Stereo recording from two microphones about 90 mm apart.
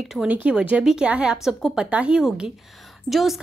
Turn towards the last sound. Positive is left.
turn(degrees=0)  # may be behind; listen again after turning